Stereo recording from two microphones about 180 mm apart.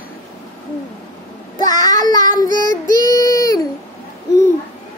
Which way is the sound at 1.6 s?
20° left (ahead or behind).